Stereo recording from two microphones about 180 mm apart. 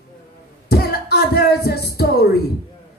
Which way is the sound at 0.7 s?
60° left (ahead or behind).